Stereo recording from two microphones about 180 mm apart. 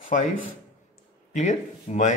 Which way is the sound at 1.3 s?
40° left (ahead or behind).